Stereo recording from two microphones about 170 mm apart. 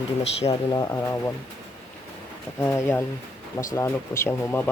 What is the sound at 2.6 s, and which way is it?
Speech, 15° left (ahead or behind).